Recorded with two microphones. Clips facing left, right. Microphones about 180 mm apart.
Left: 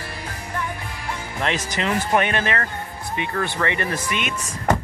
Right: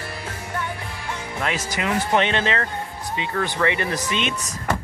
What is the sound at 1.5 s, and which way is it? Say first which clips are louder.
Speech: left 1 dB; 10° right (ahead or behind).